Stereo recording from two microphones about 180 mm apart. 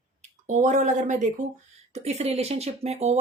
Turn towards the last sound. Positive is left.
turn(degrees=-35)  # may be behind; listen again after turning